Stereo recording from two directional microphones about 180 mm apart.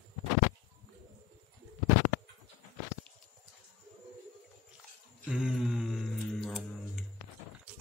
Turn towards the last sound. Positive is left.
turn(degrees=0)  # may be behind; listen again after turning